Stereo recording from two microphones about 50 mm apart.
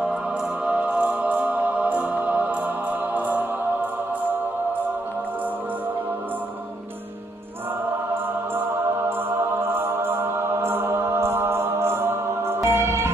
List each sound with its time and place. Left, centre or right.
0.7 s music: right
9.6 s music: right